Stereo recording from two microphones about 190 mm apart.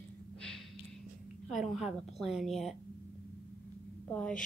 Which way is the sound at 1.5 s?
Centre (ahead or behind).